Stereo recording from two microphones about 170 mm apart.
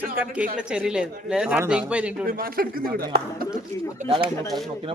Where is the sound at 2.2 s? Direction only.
60° right (ahead or behind).